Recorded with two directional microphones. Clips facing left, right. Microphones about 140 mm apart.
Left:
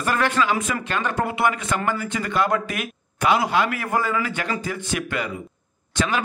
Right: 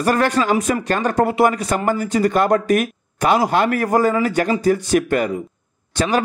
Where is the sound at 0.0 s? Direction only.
40° right (ahead or behind).